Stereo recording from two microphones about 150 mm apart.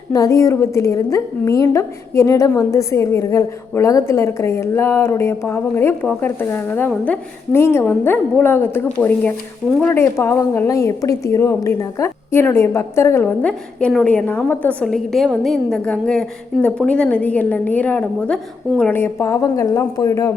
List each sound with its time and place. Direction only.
0.1 s a woman's voice: 20° left (ahead or behind)